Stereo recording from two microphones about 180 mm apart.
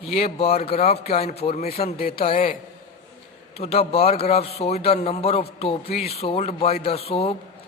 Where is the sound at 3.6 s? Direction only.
35° left (ahead or behind).